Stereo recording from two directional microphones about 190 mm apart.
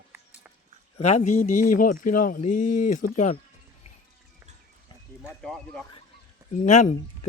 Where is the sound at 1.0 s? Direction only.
40° left (ahead or behind).